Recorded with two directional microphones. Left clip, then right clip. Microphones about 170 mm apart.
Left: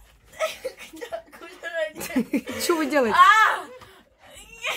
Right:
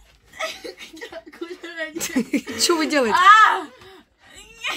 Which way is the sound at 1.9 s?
Centre (ahead or behind).